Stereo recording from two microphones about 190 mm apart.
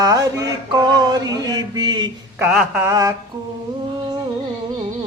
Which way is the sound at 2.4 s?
5° right (ahead or behind).